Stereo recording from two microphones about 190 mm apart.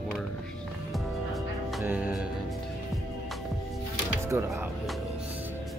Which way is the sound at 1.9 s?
10° right (ahead or behind).